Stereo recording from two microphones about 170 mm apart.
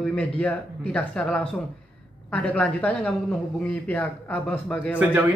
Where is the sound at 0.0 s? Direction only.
5° left (ahead or behind).